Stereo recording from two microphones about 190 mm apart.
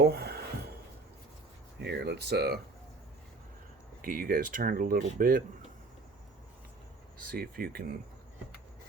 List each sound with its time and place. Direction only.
0.0 s a sound: 60° right (ahead or behind)
1.8 s speech: 60° right (ahead or behind)
4.0 s speech: 45° right (ahead or behind)
7.3 s speech: 55° right (ahead or behind)